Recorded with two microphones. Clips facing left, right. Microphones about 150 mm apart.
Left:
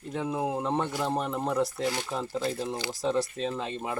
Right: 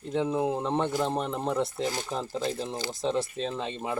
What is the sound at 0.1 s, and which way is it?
Speech, centre (ahead or behind).